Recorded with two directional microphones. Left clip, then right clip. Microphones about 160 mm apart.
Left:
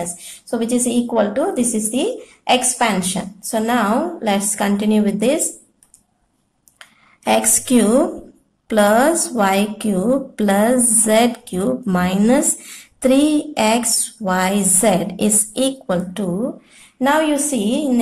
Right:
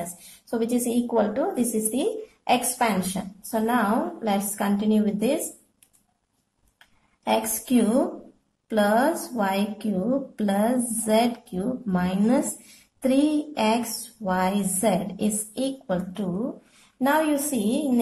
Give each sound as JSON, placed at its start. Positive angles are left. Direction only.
{"t": 0.5, "sound": "a woman's voice", "side_deg": 10}
{"t": 6.8, "sound": "a sound", "side_deg": 25}
{"t": 8.6, "sound": "a woman's voice", "side_deg": 25}